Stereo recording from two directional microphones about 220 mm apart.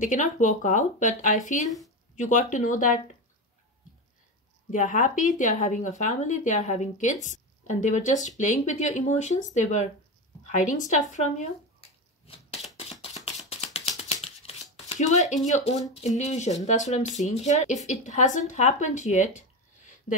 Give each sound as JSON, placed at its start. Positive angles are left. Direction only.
{"t": 0.0, "sound": "speech", "side_deg": 35}
{"t": 4.6, "sound": "speech", "side_deg": 35}
{"t": 11.1, "sound": "a sound", "side_deg": 35}
{"t": 14.9, "sound": "speech", "side_deg": 35}